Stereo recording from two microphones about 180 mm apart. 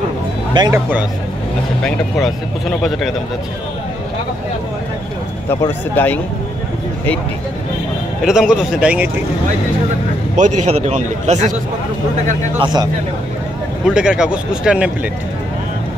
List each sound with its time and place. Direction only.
0.7 s speech: 10° right (ahead or behind)
1.8 s speech: 5° left (ahead or behind)
5.5 s speech: 10° left (ahead or behind)
8.3 s speech: 5° right (ahead or behind)
10.3 s a man's voice: 40° right (ahead or behind)
12.5 s speech: 25° right (ahead or behind)
13.8 s speech: 5° right (ahead or behind)